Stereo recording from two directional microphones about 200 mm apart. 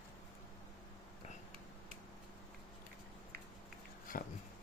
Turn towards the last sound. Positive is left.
turn(degrees=45)  # may be behind; listen again after turning